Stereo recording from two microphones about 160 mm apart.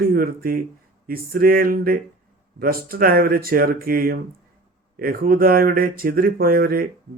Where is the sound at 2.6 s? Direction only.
65° right (ahead or behind).